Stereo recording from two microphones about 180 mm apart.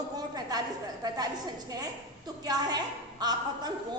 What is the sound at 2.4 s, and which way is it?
A woman's voice, 20° right (ahead or behind).